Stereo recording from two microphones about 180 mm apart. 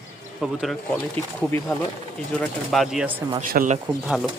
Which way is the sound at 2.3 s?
Centre (ahead or behind).